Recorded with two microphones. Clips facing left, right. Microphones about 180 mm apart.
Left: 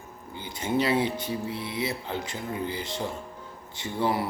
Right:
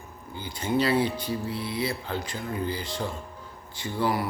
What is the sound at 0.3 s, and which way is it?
Speech, 20° left (ahead or behind).